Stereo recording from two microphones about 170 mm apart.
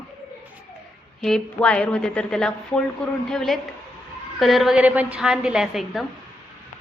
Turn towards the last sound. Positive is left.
turn(degrees=0)  # may be behind; listen again after turning